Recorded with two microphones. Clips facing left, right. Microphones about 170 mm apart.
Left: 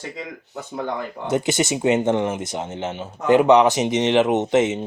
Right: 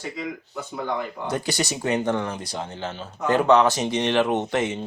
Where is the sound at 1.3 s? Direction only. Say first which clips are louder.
Left 7 dB; 20° left (ahead or behind).